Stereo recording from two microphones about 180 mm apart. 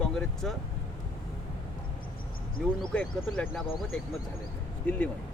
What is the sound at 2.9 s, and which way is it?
Speech, 5° left (ahead or behind).